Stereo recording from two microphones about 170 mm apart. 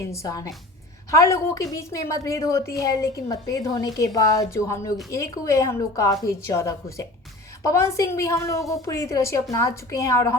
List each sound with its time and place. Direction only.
0.1 s a woman's voice: 20° left (ahead or behind)